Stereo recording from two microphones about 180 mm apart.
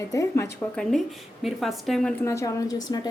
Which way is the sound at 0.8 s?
Centre (ahead or behind).